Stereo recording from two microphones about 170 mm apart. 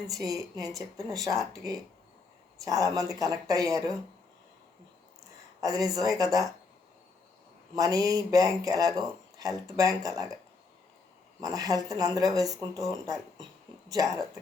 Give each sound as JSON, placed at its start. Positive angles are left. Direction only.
{"t": 0.1, "sound": "speech", "side_deg": -20}
{"t": 5.5, "sound": "speech", "side_deg": -20}
{"t": 7.8, "sound": "speech", "side_deg": -20}
{"t": 11.3, "sound": "speech", "side_deg": -20}